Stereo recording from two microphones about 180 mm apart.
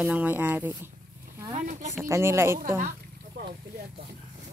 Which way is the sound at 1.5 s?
40° right (ahead or behind).